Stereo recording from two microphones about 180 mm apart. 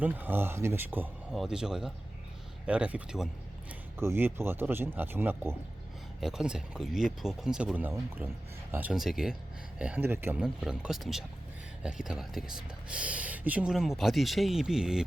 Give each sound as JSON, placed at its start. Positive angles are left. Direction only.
{"t": 0.0, "sound": "speech", "side_deg": -10}